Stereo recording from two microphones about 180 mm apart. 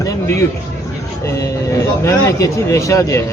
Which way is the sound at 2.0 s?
15° left (ahead or behind).